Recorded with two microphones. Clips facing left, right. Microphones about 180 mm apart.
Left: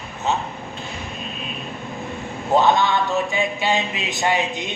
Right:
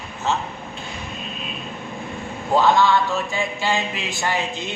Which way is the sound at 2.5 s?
20° left (ahead or behind).